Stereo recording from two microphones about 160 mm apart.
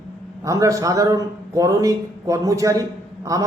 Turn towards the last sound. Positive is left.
turn(degrees=-20)  # may be behind; listen again after turning